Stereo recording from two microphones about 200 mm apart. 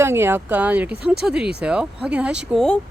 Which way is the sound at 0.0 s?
10° right (ahead or behind).